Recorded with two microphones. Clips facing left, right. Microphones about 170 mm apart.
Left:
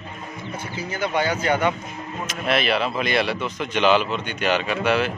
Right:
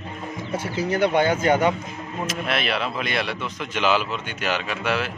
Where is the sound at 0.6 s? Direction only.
75° right (ahead or behind); by 1.7 s 45° right (ahead or behind).